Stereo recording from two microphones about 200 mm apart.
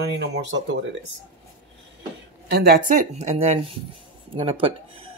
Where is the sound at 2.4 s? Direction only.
50° right (ahead or behind); by 5.0 s 25° right (ahead or behind).